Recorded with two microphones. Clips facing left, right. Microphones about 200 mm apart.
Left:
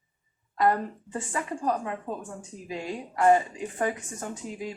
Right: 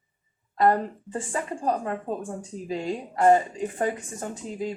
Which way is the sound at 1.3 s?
30° right (ahead or behind).